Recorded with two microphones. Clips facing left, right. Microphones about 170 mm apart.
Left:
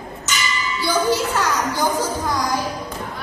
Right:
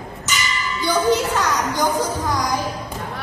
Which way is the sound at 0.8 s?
15° right (ahead or behind).